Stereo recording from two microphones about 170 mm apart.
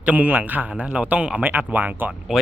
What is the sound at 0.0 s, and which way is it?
A man's voice, 10° right (ahead or behind).